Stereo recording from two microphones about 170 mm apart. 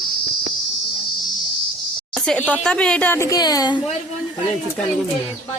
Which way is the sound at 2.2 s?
10° left (ahead or behind).